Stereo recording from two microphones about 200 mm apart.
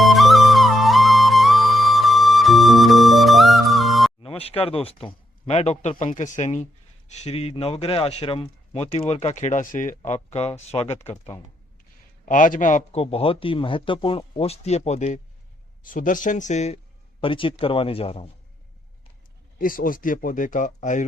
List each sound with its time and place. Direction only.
0.0 s flute: centre (ahead or behind)
4.2 s a sound: 30° left (ahead or behind)
5.0 s speech: 30° left (ahead or behind)
12.2 s speech: 40° left (ahead or behind)
19.5 s speech: 45° left (ahead or behind)